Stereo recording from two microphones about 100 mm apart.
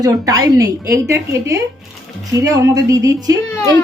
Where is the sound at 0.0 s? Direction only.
40° right (ahead or behind).